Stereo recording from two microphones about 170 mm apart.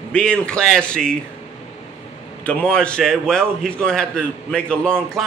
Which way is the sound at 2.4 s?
5° left (ahead or behind).